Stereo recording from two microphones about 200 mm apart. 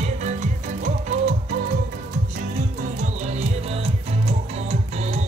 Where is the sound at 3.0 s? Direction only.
35° right (ahead or behind).